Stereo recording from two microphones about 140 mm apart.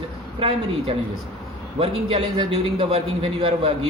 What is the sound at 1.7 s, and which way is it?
A man's voice, 40° right (ahead or behind).